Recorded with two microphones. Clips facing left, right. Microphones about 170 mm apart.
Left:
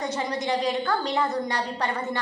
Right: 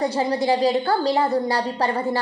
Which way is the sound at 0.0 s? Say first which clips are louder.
Right 7 dB; 30° right (ahead or behind).